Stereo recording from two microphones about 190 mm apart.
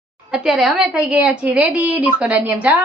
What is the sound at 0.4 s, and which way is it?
A woman's voice, centre (ahead or behind).